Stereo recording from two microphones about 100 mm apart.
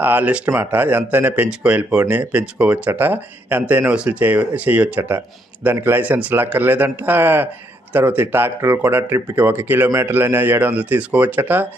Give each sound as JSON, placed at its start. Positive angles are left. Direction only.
{"t": 0.0, "sound": "speech", "side_deg": -15}